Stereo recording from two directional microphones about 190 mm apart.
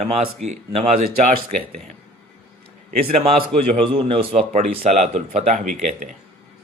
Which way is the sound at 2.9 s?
30° right (ahead or behind).